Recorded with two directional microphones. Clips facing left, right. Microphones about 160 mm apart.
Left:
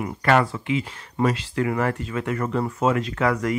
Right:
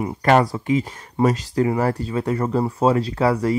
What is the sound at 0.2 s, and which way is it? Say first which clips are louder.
Speech: right 3 dB; 40° right (ahead or behind).